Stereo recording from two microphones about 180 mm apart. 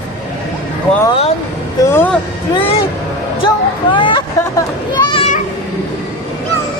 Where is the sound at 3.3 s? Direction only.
25° left (ahead or behind).